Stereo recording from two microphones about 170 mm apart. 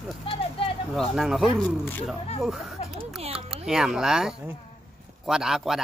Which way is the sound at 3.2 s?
35° right (ahead or behind).